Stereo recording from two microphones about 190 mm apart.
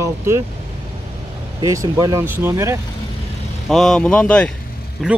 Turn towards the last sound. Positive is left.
turn(degrees=0)  # may be behind; listen again after turning